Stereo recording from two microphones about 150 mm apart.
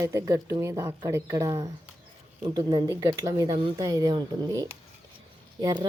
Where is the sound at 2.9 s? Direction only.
20° right (ahead or behind).